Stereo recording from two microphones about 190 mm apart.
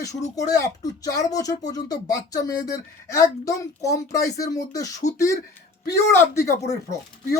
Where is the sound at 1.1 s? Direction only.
20° left (ahead or behind).